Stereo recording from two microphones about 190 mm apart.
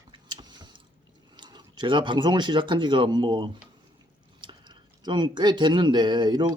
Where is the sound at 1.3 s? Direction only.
25° right (ahead or behind).